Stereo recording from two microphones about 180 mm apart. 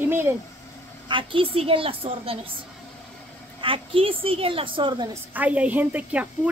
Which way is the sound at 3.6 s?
30° right (ahead or behind).